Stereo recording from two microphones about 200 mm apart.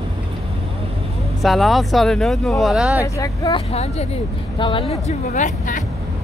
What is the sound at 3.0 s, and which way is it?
Speech, 15° left (ahead or behind).